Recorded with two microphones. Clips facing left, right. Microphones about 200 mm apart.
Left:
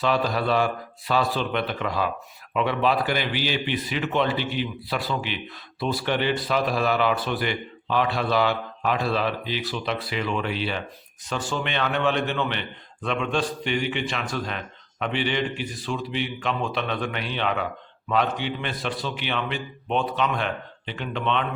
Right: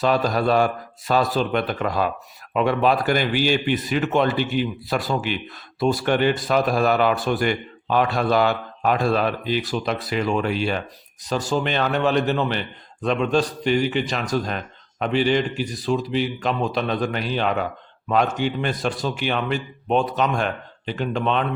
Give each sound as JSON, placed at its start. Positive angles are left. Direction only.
{"t": 0.0, "sound": "a man's voice", "side_deg": -45}